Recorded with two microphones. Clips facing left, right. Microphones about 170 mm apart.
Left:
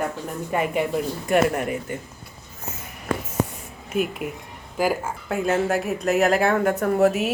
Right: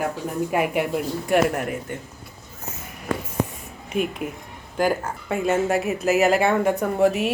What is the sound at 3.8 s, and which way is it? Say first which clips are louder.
Speech: even; centre (ahead or behind).